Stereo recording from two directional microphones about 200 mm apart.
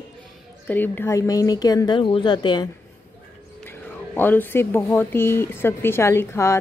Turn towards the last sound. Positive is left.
turn(degrees=15)  # may be behind; listen again after turning